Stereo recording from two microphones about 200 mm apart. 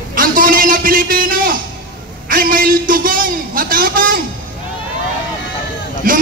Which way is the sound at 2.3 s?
45° right (ahead or behind).